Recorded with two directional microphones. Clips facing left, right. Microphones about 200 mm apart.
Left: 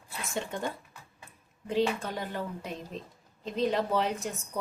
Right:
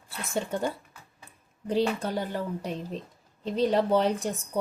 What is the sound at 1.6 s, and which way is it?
A woman's voice, 35° right (ahead or behind).